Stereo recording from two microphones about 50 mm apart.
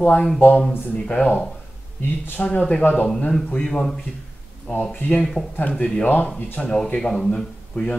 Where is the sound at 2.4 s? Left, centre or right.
Left.